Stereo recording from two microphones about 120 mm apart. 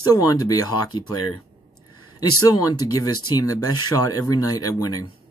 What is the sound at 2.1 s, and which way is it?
Speech, 30° left (ahead or behind).